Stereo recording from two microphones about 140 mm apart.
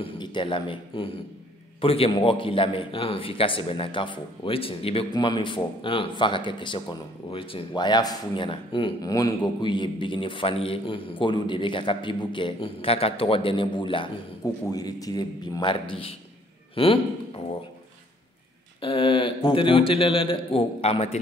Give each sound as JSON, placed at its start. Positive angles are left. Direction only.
{"t": 0.0, "sound": "a man's voice", "side_deg": 35}
{"t": 18.8, "sound": "a man's voice", "side_deg": 40}